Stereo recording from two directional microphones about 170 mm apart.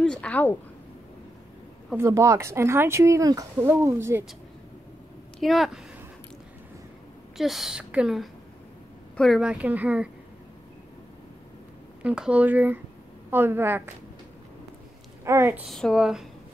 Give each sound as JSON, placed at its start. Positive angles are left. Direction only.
{"t": 0.0, "sound": "a woman's voice", "side_deg": 5}
{"t": 2.0, "sound": "speech", "side_deg": -15}
{"t": 5.4, "sound": "a woman's voice", "side_deg": 0}
{"t": 7.3, "sound": "a woman's voice", "side_deg": 0}
{"t": 12.0, "sound": "speech", "side_deg": -5}
{"t": 15.2, "sound": "speech", "side_deg": -15}
{"t": 15.7, "sound": "a woman's voice", "side_deg": 0}